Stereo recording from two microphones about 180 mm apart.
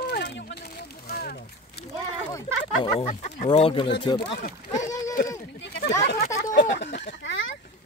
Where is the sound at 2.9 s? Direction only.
35° left (ahead or behind).